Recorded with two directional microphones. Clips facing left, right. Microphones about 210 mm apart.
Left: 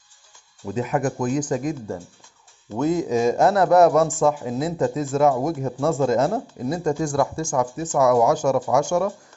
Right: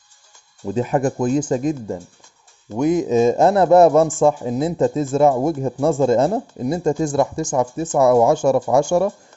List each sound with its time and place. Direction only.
0.6 s a man's voice: 30° right (ahead or behind)